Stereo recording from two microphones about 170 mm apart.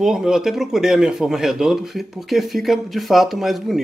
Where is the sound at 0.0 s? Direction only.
5° right (ahead or behind).